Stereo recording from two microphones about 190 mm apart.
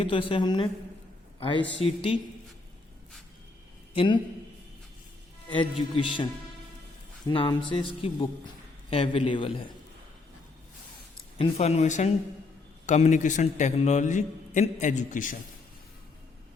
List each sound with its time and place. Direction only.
0.0 s a man's voice: 30° left (ahead or behind)
3.9 s a man's voice: 25° left (ahead or behind)
5.5 s speech: 25° left (ahead or behind)
7.3 s speech: 25° left (ahead or behind)
11.3 s a man's voice: 35° left (ahead or behind)